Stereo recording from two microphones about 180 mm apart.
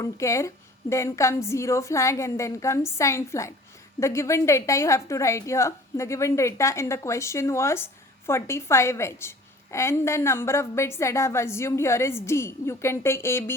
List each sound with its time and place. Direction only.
0.0 s a woman's voice: 15° left (ahead or behind)